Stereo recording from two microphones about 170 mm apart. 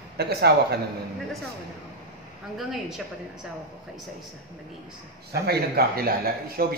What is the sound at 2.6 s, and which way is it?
Speech, centre (ahead or behind).